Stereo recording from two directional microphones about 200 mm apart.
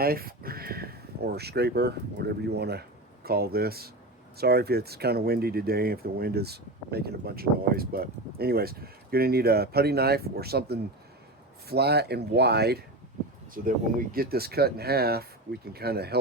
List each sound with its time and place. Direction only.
0.0 s speech: 50° right (ahead or behind)